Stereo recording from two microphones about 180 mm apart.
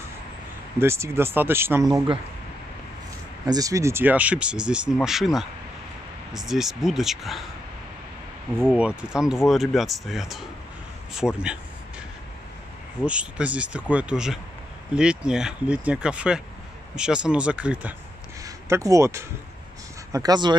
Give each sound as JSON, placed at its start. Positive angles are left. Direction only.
{"t": 0.7, "sound": "speech", "side_deg": -15}
{"t": 3.4, "sound": "speech", "side_deg": -20}
{"t": 8.7, "sound": "speech", "side_deg": -5}
{"t": 13.0, "sound": "speech", "side_deg": -5}
{"t": 18.4, "sound": "speech", "side_deg": -20}